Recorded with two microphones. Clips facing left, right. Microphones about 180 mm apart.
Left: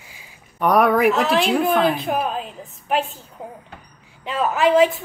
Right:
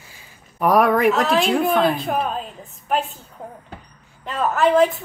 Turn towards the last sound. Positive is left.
turn(degrees=0)  # may be behind; listen again after turning